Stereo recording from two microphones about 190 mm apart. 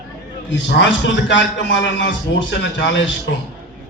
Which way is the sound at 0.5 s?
75° left (ahead or behind).